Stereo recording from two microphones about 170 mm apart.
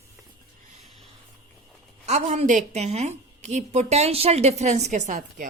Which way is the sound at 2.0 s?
40° right (ahead or behind).